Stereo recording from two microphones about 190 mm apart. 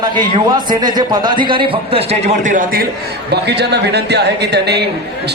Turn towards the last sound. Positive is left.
turn(degrees=-60)  # may be behind; listen again after turning